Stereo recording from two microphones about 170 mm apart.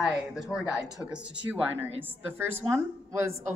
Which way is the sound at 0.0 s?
5° right (ahead or behind).